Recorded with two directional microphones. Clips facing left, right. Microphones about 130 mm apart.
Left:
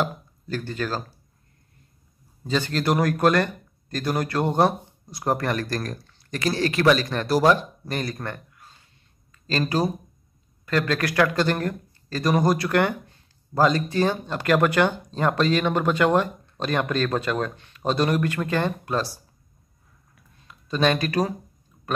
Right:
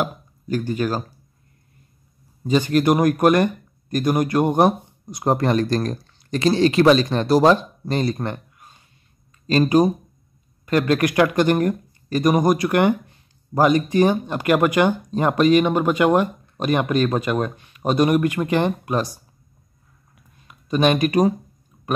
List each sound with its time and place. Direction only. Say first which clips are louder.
0.0 s speech: right 2 dB; 15° right (ahead or behind)
2.4 s speech: right 6 dB; 15° right (ahead or behind)
20.4 s speech: right 4 dB; 15° right (ahead or behind)